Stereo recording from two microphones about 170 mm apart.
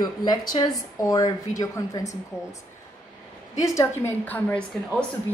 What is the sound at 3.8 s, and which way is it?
A woman's voice, 10° left (ahead or behind).